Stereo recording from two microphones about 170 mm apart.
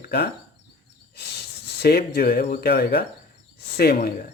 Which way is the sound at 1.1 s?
75° left (ahead or behind).